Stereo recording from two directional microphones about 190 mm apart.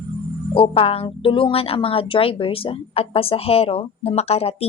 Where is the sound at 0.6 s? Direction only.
30° left (ahead or behind).